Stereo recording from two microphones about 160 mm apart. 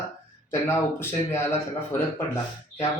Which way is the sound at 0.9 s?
15° left (ahead or behind).